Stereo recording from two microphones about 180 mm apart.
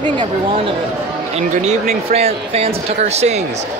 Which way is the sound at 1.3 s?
40° right (ahead or behind).